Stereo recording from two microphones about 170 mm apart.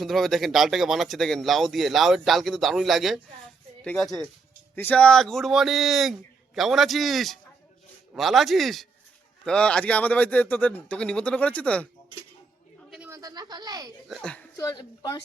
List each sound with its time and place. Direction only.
0.0 s speech: centre (ahead or behind)
12.9 s a sound: 5° right (ahead or behind)
13.1 s speech: 20° right (ahead or behind)
14.1 s speech: 5° left (ahead or behind)
14.5 s speech: 20° left (ahead or behind)